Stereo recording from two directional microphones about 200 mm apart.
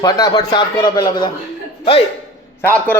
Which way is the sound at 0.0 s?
20° left (ahead or behind).